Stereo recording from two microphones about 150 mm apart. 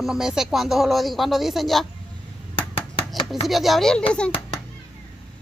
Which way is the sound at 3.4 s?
Centre (ahead or behind).